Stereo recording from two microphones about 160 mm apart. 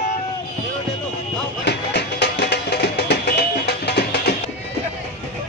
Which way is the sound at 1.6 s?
90° left.